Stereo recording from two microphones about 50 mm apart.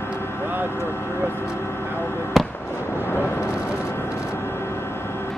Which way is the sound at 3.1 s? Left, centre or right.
Left.